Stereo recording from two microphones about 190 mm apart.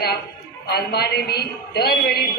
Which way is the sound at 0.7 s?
55° left (ahead or behind).